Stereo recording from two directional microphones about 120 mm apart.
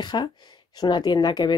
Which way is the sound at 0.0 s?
40° left (ahead or behind).